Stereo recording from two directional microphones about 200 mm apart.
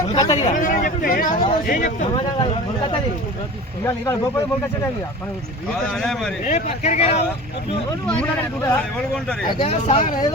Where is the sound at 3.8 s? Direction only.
10° left (ahead or behind).